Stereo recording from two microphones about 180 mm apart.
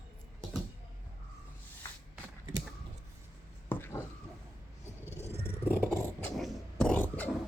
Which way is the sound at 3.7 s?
10° left (ahead or behind).